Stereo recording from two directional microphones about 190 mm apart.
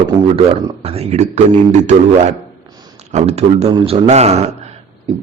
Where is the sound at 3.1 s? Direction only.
35° right (ahead or behind).